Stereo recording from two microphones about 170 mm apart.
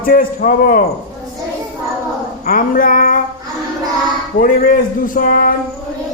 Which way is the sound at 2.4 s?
55° left (ahead or behind).